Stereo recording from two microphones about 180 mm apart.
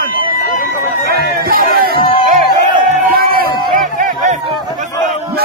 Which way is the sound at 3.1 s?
55° right (ahead or behind).